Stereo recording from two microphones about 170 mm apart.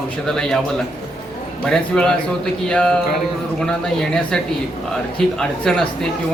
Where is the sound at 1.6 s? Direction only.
5° left (ahead or behind).